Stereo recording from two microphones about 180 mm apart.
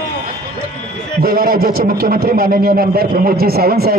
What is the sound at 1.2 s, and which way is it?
A man's voice, 55° right (ahead or behind).